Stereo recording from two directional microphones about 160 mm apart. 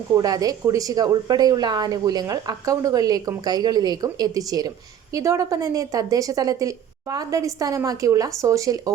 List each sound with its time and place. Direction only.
0.1 s speech: 25° right (ahead or behind)